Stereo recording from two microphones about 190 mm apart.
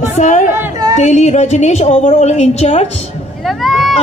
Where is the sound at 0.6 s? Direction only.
20° right (ahead or behind).